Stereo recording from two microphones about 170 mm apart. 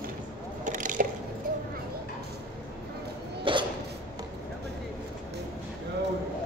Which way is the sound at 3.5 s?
30° right (ahead or behind).